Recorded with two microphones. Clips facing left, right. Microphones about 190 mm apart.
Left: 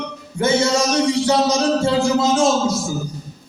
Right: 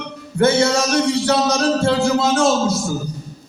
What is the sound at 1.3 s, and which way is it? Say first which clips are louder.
A man's voice: even; 60° right (ahead or behind).